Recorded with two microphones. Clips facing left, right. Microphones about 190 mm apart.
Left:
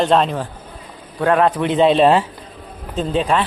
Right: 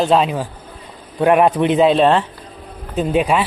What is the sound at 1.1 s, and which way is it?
Speech, 15° right (ahead or behind).